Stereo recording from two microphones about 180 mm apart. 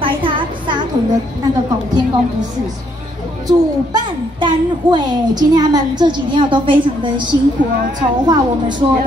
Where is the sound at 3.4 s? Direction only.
25° right (ahead or behind).